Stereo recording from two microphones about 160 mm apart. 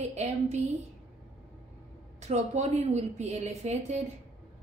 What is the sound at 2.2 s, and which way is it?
A woman's voice, 45° right (ahead or behind).